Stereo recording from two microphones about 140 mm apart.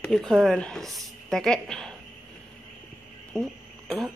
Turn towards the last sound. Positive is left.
turn(degrees=0)  # may be behind; listen again after turning